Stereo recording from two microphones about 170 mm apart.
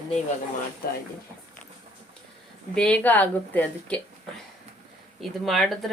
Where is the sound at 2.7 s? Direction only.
5° left (ahead or behind).